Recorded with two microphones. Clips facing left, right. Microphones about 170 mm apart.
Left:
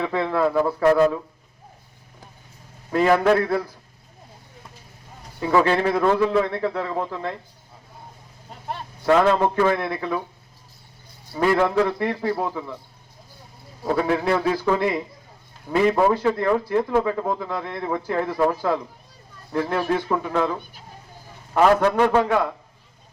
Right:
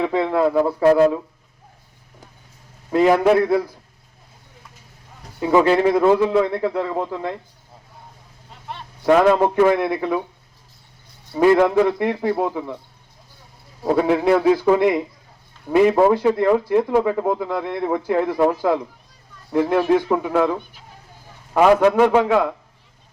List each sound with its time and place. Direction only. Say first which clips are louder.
0.0 s a man's voice: right 3 dB; 15° right (ahead or behind)
2.9 s a man's voice: right 3 dB; 15° right (ahead or behind)
5.4 s a man's voice: right 4 dB; 15° right (ahead or behind)
9.0 s a man's voice: right 3 dB; 15° right (ahead or behind)
11.3 s a man's voice: right 5 dB; 15° right (ahead or behind)
13.8 s a man's voice: right 4 dB; 15° right (ahead or behind)